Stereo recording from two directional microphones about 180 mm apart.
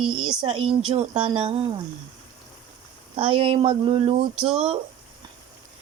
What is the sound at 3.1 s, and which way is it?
Speech, 30° right (ahead or behind).